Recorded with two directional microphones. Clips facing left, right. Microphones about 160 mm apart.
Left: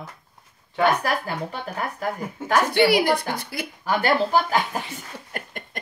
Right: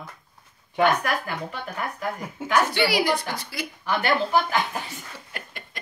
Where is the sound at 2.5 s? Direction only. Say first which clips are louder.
Left 4 dB; 55° left (ahead or behind).